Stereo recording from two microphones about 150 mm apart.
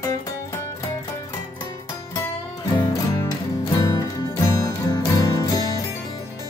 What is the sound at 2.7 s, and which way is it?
Music, 25° left (ahead or behind).